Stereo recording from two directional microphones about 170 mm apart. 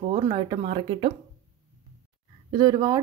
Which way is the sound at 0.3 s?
30° right (ahead or behind).